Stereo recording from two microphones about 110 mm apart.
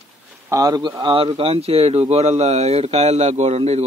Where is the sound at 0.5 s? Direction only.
35° right (ahead or behind).